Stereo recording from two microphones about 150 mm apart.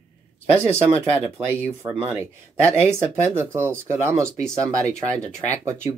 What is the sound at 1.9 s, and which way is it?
Speech, 5° right (ahead or behind).